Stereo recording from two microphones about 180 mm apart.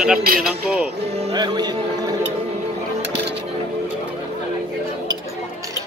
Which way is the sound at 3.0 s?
70° right (ahead or behind).